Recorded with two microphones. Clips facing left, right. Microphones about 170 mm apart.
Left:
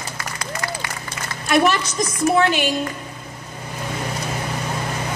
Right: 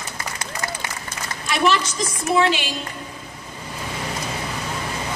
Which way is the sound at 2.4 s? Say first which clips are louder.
Left 1 dB; 60° left (ahead or behind).